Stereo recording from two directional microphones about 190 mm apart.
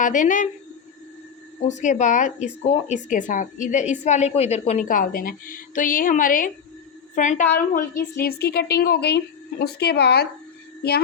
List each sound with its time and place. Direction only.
0.0 s speech: 45° left (ahead or behind)
1.8 s a woman's voice: 40° left (ahead or behind); by 10.2 s 60° left (ahead or behind)